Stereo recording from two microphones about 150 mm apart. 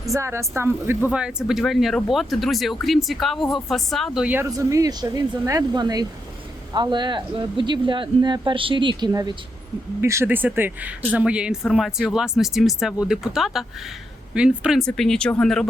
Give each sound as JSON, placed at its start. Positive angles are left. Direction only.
{"t": 0.1, "sound": "speech", "side_deg": -20}
{"t": 4.4, "sound": "speech", "side_deg": -25}
{"t": 10.0, "sound": "speech", "side_deg": -15}